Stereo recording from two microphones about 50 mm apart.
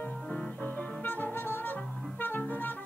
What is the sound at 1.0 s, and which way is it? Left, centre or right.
Music, left.